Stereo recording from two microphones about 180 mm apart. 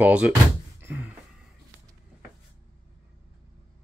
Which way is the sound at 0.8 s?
10° right (ahead or behind).